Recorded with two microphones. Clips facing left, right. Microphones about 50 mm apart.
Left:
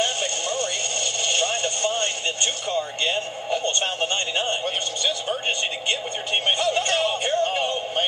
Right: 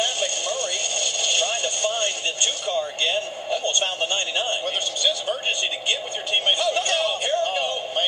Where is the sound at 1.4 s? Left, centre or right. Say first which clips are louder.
Even; centre.